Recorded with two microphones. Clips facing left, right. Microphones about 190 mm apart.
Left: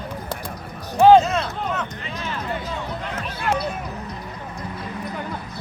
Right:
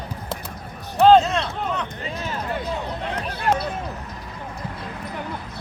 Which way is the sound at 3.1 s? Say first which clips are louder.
Right 3 dB; 35° right (ahead or behind).